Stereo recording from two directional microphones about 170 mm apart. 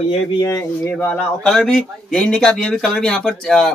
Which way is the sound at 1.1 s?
5° left (ahead or behind).